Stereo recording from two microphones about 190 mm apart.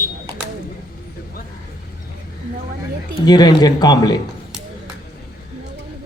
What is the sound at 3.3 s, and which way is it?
Speech, 20° left (ahead or behind).